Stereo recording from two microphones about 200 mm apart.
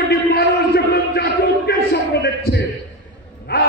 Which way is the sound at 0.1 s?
50° left (ahead or behind).